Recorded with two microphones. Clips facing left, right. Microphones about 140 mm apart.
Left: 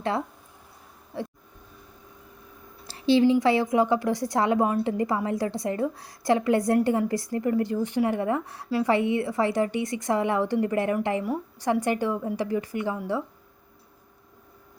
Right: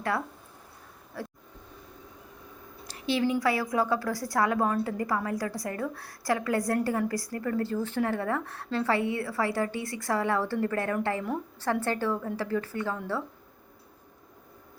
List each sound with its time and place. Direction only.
1.1 s speech: 20° left (ahead or behind)
2.8 s a woman's voice: 30° left (ahead or behind)